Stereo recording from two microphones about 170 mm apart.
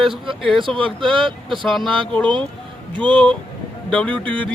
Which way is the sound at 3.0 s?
30° right (ahead or behind).